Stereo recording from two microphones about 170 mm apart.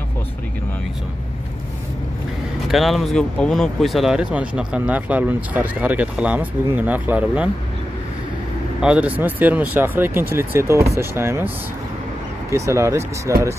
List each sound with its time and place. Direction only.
2.7 s speech: centre (ahead or behind)
8.8 s speech: 5° right (ahead or behind)